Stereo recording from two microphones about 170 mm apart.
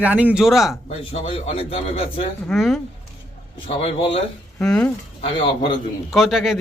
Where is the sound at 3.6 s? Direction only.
35° left (ahead or behind).